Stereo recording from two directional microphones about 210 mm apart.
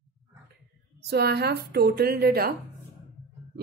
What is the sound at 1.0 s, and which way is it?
Speech, 50° right (ahead or behind).